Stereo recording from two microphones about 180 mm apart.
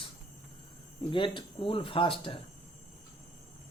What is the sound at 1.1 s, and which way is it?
Speech, 25° left (ahead or behind).